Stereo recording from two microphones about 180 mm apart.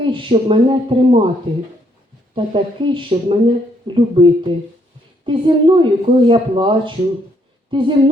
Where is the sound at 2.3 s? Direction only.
25° right (ahead or behind).